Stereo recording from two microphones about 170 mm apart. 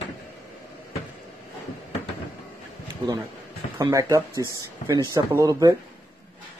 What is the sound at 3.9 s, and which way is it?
Speech, 20° right (ahead or behind).